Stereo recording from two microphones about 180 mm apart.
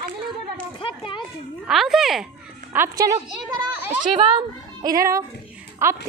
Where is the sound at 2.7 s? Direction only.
15° right (ahead or behind).